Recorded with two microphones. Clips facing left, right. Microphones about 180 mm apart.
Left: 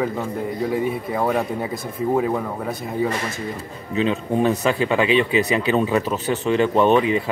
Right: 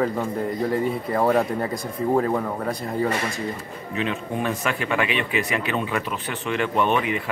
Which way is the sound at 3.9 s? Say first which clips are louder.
Left 6 dB; 30° left (ahead or behind).